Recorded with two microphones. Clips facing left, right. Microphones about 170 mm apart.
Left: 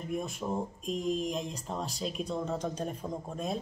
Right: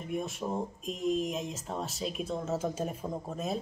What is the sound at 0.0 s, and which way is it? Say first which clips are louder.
Speech: even; centre (ahead or behind).